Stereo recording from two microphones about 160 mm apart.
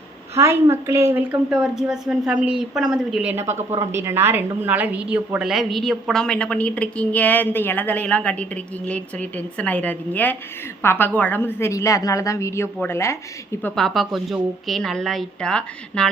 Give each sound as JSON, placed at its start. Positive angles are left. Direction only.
{"t": 0.3, "sound": "a woman's voice", "side_deg": -15}
{"t": 3.3, "sound": "a woman's voice", "side_deg": -15}